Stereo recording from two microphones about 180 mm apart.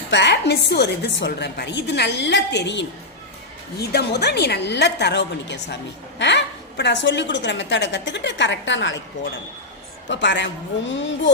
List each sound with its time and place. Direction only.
0.1 s a woman's voice: 75° left (ahead or behind); by 9.0 s 90° left
10.1 s a woman's voice: 80° left